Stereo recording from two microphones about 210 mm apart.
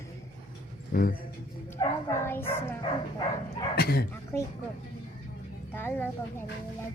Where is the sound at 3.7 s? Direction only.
45° left (ahead or behind).